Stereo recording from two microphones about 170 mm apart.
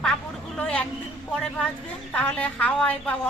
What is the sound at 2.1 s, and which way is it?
A woman's voice, 10° left (ahead or behind).